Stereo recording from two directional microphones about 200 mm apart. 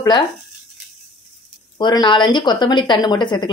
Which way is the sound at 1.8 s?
20° left (ahead or behind).